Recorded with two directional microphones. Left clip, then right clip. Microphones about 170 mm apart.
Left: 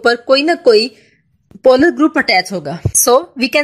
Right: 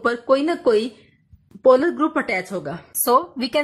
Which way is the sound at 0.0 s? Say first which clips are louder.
Left 7 dB; 25° left (ahead or behind).